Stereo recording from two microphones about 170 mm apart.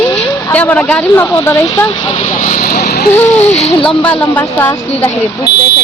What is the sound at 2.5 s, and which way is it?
Speech, 65° left (ahead or behind).